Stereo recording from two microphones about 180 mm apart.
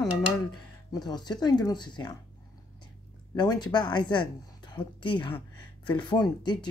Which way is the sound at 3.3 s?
25° left (ahead or behind).